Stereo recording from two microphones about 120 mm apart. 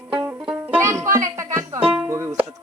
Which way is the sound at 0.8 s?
25° right (ahead or behind).